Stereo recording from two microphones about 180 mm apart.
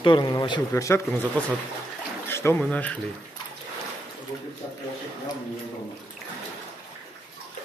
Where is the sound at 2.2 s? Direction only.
15° left (ahead or behind).